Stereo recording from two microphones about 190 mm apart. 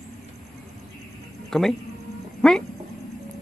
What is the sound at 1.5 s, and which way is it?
Speech, centre (ahead or behind).